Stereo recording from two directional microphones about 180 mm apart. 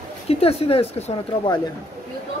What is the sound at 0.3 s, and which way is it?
Speech, 35° left (ahead or behind).